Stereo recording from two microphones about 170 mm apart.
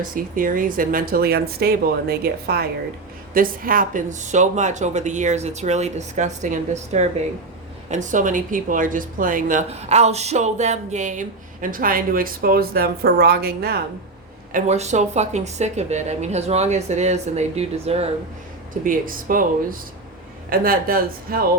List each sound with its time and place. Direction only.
0.1 s speech: 55° right (ahead or behind)
9.6 s speech: 40° right (ahead or behind); by 13.8 s 65° right (ahead or behind)
14.5 s a woman's voice: 40° right (ahead or behind)
18.7 s speech: 55° right (ahead or behind)
20.5 s speech: 60° right (ahead or behind)